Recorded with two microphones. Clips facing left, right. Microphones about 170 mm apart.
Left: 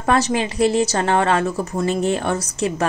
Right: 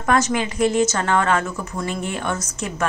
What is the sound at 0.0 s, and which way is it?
Speech, 30° left (ahead or behind).